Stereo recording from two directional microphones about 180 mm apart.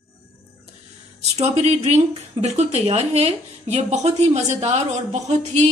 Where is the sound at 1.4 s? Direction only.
35° right (ahead or behind).